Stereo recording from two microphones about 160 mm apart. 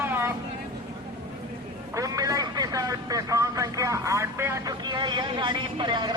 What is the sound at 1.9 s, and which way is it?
Vehicle, 20° right (ahead or behind).